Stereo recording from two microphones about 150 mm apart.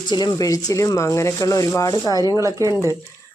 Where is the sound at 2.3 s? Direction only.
20° right (ahead or behind).